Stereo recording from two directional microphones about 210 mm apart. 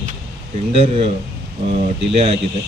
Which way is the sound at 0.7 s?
25° right (ahead or behind).